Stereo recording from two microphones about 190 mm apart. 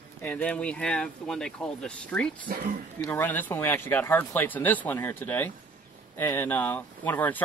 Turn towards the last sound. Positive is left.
turn(degrees=10)  # may be behind; listen again after turning